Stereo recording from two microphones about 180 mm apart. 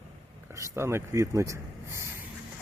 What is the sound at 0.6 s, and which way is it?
Speech, 15° right (ahead or behind).